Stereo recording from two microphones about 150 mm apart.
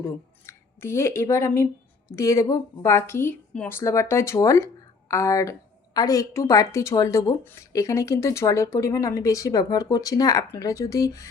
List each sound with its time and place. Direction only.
0.0 s speech: 15° left (ahead or behind)